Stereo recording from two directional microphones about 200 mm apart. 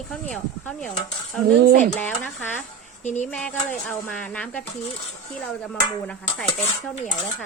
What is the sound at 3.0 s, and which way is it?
Speech, 35° left (ahead or behind).